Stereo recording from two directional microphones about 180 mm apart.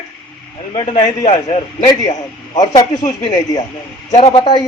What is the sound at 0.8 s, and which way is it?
Speech, 30° left (ahead or behind).